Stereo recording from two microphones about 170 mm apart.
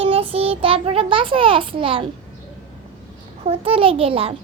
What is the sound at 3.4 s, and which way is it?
Speech, 35° right (ahead or behind).